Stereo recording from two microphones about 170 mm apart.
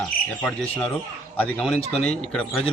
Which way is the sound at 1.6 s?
5° left (ahead or behind).